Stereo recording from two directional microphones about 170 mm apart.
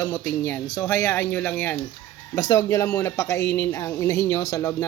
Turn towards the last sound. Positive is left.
turn(degrees=20)  # may be behind; listen again after turning